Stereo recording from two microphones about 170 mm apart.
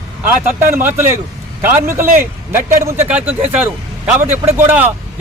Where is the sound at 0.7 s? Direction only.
15° right (ahead or behind).